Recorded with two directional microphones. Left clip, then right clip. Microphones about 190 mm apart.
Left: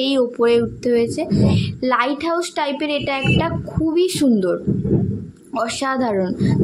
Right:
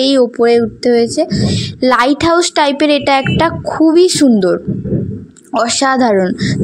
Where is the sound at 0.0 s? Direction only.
35° right (ahead or behind).